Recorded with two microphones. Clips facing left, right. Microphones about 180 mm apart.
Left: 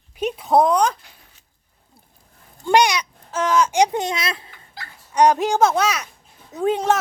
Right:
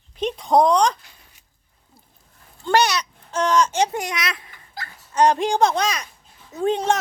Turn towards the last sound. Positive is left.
turn(degrees=5)  # may be behind; listen again after turning